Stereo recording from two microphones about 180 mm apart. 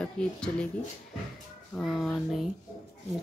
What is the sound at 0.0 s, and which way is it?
Speech, 5° left (ahead or behind).